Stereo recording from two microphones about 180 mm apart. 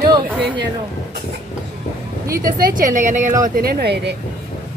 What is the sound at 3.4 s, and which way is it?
Speech, 55° right (ahead or behind).